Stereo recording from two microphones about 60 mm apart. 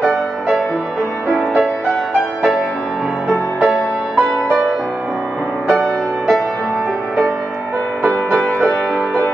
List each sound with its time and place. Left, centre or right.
1.3 s music: centre
3.5 s music: centre
5.7 s music: centre